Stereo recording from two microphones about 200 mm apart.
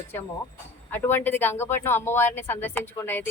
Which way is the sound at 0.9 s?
10° left (ahead or behind).